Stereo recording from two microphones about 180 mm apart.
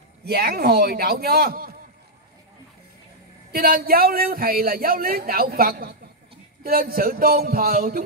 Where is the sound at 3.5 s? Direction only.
55° right (ahead or behind).